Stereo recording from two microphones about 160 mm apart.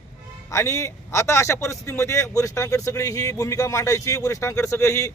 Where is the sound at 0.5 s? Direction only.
15° left (ahead or behind).